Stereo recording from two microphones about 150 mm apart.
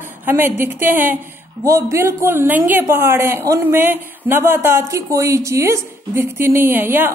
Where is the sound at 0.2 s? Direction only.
15° right (ahead or behind).